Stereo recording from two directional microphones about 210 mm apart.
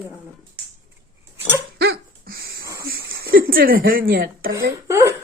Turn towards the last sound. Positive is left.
turn(degrees=-15)  # may be behind; listen again after turning